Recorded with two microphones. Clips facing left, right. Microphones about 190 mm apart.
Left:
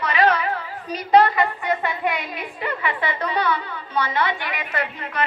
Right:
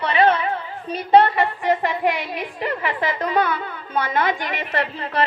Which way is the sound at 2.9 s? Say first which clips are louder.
Right 2 dB; 45° right (ahead or behind).